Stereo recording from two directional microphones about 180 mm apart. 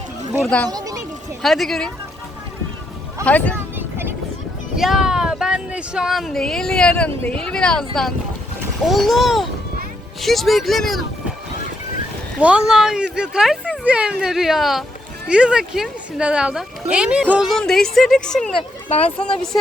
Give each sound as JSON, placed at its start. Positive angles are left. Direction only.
{"t": 0.4, "sound": "speech", "side_deg": 5}
{"t": 0.7, "sound": "speech", "side_deg": -20}
{"t": 1.4, "sound": "speech", "side_deg": 0}
{"t": 3.2, "sound": "speech", "side_deg": 10}
{"t": 3.8, "sound": "music", "side_deg": -10}
{"t": 4.8, "sound": "speech", "side_deg": 0}
{"t": 12.4, "sound": "speech", "side_deg": -5}